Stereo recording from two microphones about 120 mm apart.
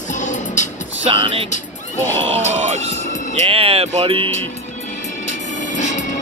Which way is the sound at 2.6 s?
65° right (ahead or behind).